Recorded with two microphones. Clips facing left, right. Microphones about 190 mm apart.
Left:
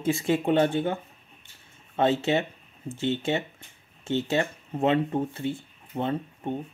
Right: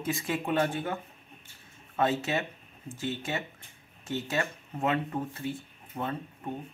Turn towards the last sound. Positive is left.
turn(degrees=25)  # may be behind; listen again after turning